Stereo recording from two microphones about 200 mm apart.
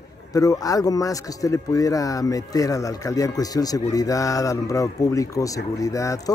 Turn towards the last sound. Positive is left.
turn(degrees=15)  # may be behind; listen again after turning